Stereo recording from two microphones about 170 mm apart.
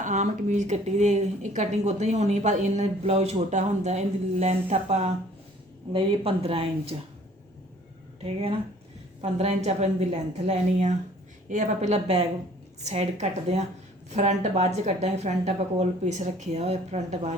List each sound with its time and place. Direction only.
0.0 s speech: 45° right (ahead or behind)
8.2 s speech: 35° right (ahead or behind)